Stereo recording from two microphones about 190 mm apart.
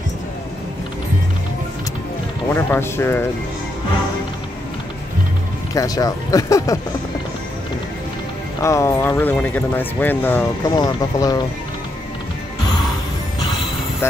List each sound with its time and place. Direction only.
2.5 s speech: 10° left (ahead or behind)
5.8 s speech: 20° left (ahead or behind)
8.6 s speech: 15° left (ahead or behind)